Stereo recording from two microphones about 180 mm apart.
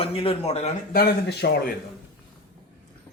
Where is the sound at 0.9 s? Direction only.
60° left (ahead or behind).